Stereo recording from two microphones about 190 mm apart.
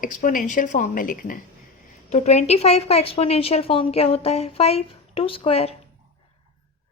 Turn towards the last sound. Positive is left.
turn(degrees=30)  # may be behind; listen again after turning